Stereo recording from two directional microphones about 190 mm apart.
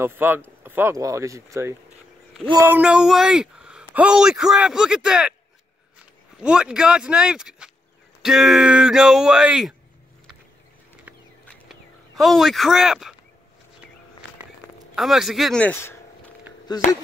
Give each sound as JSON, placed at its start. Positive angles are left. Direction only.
{"t": 0.0, "sound": "a man's voice", "side_deg": -10}
{"t": 6.4, "sound": "a man's voice", "side_deg": -5}
{"t": 11.4, "sound": "a sound", "side_deg": 0}
{"t": 15.0, "sound": "a man's voice", "side_deg": 0}